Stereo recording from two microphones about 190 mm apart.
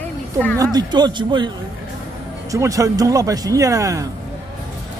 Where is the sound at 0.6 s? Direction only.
20° right (ahead or behind).